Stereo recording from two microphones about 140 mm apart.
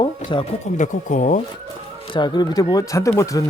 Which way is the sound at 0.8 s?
65° left (ahead or behind).